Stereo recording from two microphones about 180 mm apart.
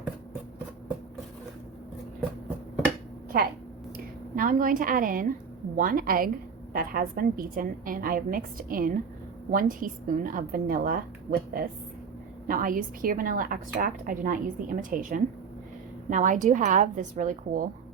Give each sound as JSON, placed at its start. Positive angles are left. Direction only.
{"t": 3.9, "sound": "speech", "side_deg": -50}